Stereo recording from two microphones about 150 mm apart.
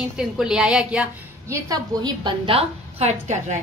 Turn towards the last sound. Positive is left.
turn(degrees=-50)  # may be behind; listen again after turning